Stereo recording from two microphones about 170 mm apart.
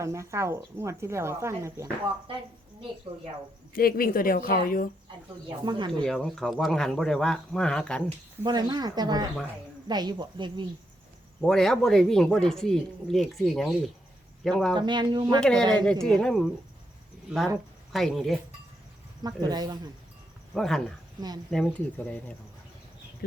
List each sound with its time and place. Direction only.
0.0 s speech: 15° right (ahead or behind)
3.7 s speech: 60° left (ahead or behind)
5.5 s speech: 25° right (ahead or behind)
6.0 s speech: 5° left (ahead or behind)
8.4 s speech: 25° right (ahead or behind)
11.3 s speech: centre (ahead or behind)
14.8 s speech: 25° right (ahead or behind)
15.4 s speech: 5° left (ahead or behind)
17.9 s speech: centre (ahead or behind)
19.2 s speech: 25° right (ahead or behind)
20.5 s speech: 5° left (ahead or behind)